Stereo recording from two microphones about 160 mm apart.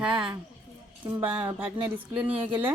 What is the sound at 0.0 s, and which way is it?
Speech, 30° right (ahead or behind).